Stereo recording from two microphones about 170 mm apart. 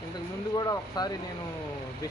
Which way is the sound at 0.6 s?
25° left (ahead or behind).